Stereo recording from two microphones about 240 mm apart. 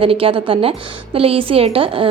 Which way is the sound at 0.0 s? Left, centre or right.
Right.